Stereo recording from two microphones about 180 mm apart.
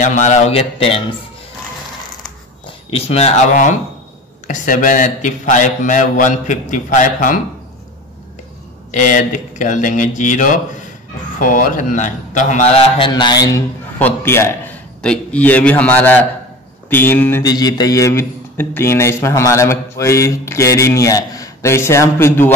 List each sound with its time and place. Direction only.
0.0 s a man's voice: 45° left (ahead or behind)
2.6 s a man's voice: 30° left (ahead or behind)
8.9 s a man's voice: 45° left (ahead or behind)
13.1 s a man's voice: 20° left (ahead or behind)